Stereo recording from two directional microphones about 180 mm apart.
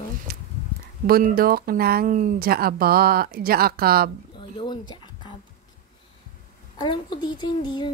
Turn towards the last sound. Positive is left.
turn(degrees=25)  # may be behind; listen again after turning